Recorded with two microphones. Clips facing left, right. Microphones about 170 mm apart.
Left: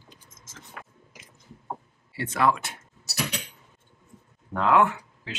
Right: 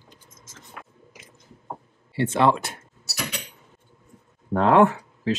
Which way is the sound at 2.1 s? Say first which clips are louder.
Right 4 dB; 25° right (ahead or behind).